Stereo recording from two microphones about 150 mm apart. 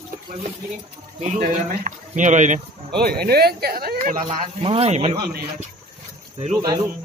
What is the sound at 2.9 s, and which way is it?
Speech, 90° right.